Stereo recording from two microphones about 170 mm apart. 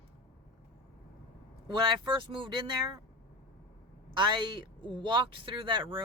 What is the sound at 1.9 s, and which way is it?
Speech, 25° right (ahead or behind).